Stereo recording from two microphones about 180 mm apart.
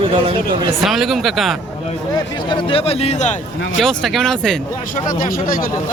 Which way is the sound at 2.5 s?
30° left (ahead or behind).